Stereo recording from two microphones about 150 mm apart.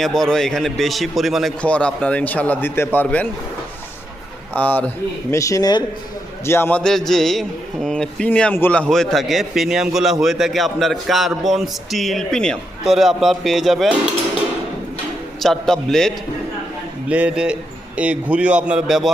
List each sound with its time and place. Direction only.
0.0 s a man's voice: centre (ahead or behind)
4.5 s a man's voice: 10° left (ahead or behind)
5.3 s a man's voice: 20° left (ahead or behind); by 13.9 s centre (ahead or behind)
15.4 s a man's voice: centre (ahead or behind)
17.1 s a man's voice: 10° right (ahead or behind)